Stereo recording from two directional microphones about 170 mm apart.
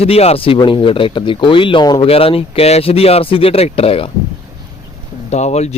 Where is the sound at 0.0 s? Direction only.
35° left (ahead or behind).